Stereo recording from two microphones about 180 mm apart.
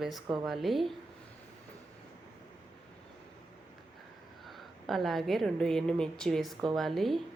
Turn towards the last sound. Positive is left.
turn(degrees=0)  # may be behind; listen again after turning